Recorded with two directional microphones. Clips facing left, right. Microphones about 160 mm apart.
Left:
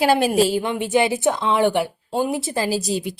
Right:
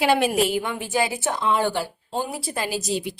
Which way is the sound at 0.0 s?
40° left (ahead or behind).